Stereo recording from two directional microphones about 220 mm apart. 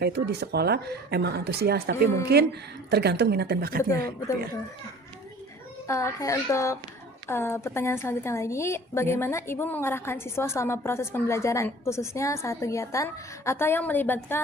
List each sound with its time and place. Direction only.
0.0 s a woman's voice: 50° right (ahead or behind)
5.9 s a woman's voice: 15° left (ahead or behind)